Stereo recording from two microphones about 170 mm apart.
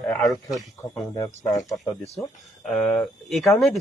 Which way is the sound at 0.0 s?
5° left (ahead or behind).